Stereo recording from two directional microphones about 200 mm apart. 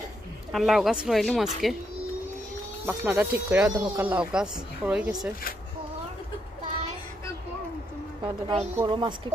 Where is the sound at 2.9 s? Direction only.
5° right (ahead or behind).